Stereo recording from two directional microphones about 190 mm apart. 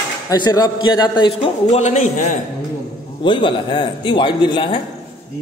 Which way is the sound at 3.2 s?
25° left (ahead or behind).